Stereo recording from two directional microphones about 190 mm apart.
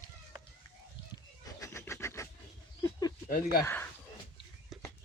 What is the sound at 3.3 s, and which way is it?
Speech, 55° left (ahead or behind).